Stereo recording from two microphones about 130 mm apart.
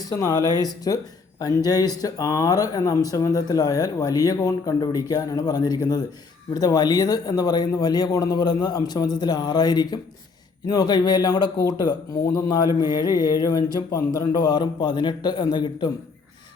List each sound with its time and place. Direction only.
0.0 s speech: 30° left (ahead or behind)